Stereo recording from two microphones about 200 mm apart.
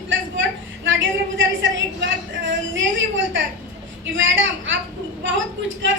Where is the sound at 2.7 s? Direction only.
70° right (ahead or behind).